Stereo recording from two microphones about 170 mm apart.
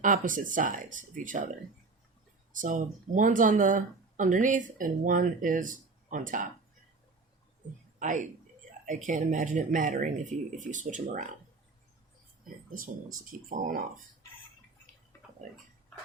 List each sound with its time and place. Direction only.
0.0 s speech: 50° right (ahead or behind)
2.5 s speech: 50° right (ahead or behind)
7.9 s a woman's voice: 50° right (ahead or behind)
13.1 s speech: 50° right (ahead or behind)